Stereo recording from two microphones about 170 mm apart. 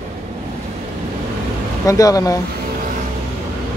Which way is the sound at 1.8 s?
20° left (ahead or behind).